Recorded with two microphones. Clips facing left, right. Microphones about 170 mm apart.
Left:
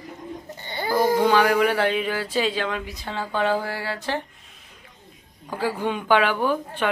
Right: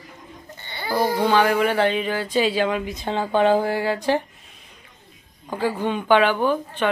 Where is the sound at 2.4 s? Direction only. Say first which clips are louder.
Right 6 dB; 10° right (ahead or behind).